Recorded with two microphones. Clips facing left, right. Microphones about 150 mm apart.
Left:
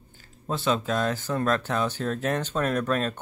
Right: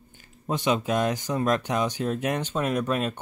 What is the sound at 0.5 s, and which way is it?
Speech, 15° right (ahead or behind).